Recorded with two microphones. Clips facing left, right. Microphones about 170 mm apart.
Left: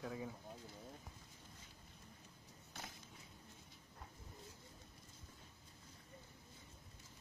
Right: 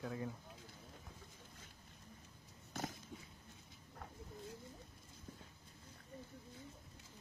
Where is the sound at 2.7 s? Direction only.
45° right (ahead or behind).